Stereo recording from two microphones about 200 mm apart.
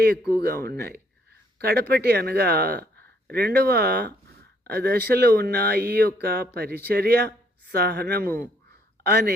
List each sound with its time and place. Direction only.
0.3 s a woman's voice: 55° right (ahead or behind)